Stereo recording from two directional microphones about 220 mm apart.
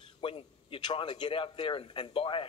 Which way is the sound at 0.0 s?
25° left (ahead or behind).